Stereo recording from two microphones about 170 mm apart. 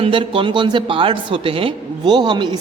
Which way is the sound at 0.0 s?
30° right (ahead or behind).